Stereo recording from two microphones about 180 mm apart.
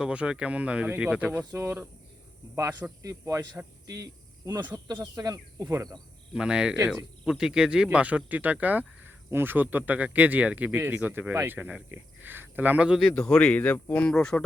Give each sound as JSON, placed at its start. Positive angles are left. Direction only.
{"t": 0.0, "sound": "speech", "side_deg": -5}
{"t": 6.3, "sound": "speech", "side_deg": -5}